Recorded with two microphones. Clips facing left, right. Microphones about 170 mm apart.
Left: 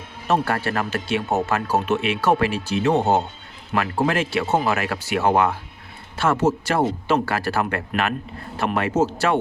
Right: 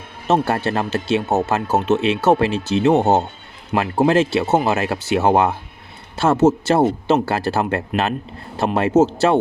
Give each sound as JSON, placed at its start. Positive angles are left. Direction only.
{"t": 0.3, "sound": "speech", "side_deg": -25}